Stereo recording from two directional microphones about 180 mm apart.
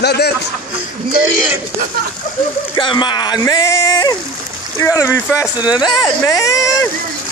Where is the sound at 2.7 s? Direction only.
25° left (ahead or behind).